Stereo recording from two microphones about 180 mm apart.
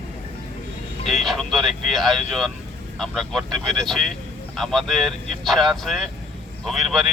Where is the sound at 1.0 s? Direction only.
Centre (ahead or behind).